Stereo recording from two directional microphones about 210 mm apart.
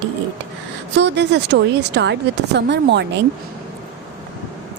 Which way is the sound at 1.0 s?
55° right (ahead or behind).